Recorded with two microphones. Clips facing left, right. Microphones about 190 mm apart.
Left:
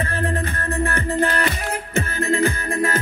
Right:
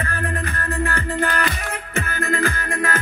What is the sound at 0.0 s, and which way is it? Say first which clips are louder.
Music: left 3 dB; 25° left (ahead or behind).